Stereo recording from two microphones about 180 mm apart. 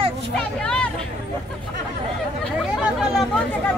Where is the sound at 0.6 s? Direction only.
5° left (ahead or behind).